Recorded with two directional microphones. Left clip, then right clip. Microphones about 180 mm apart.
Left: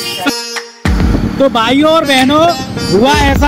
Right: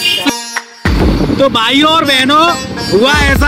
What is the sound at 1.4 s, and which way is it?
Speech, centre (ahead or behind).